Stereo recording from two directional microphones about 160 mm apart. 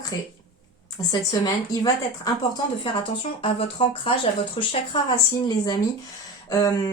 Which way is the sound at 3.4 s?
35° left (ahead or behind).